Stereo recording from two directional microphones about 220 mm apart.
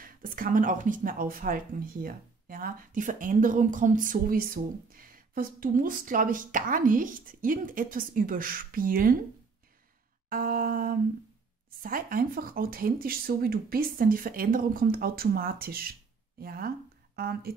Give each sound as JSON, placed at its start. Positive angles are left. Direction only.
{"t": 0.0, "sound": "speech", "side_deg": -40}
{"t": 10.3, "sound": "speech", "side_deg": -40}